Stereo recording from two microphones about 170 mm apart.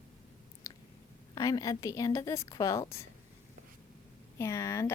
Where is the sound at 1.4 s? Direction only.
20° left (ahead or behind).